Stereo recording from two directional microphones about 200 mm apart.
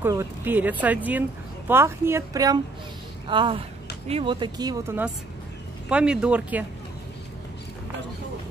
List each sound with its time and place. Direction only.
0.0 s speech: 10° right (ahead or behind)